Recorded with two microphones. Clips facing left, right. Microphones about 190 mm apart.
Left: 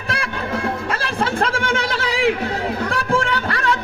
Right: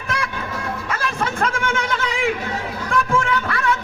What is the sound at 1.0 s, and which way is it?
Chatter, 30° left (ahead or behind).